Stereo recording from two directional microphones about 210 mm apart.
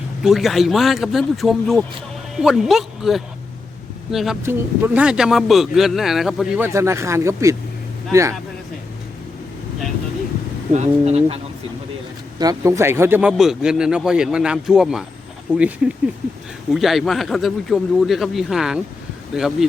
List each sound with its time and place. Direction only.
0.2 s speech: centre (ahead or behind)
6.7 s speech: 15° right (ahead or behind)
10.7 s speech: 30° right (ahead or behind)
12.4 s speech: 15° right (ahead or behind)